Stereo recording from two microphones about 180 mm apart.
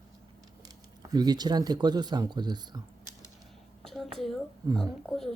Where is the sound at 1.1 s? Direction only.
20° right (ahead or behind).